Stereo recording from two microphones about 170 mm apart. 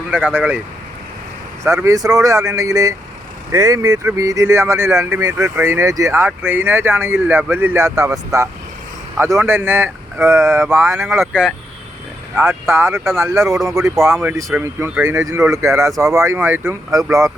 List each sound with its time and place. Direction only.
0.3 s speech: 10° right (ahead or behind)
1.6 s speech: 15° right (ahead or behind)
11.1 s speech: 5° right (ahead or behind)
12.4 s speech: 15° right (ahead or behind)